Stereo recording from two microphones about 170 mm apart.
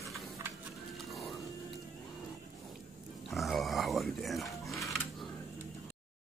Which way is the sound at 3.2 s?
Centre (ahead or behind).